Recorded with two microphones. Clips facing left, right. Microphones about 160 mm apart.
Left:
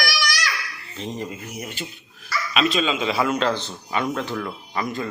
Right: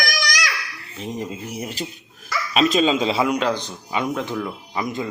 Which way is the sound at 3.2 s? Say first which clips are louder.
Right 1 dB; 15° right (ahead or behind).